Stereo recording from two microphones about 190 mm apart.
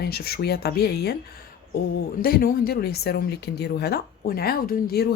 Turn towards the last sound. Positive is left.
turn(degrees=55)  # may be behind; listen again after turning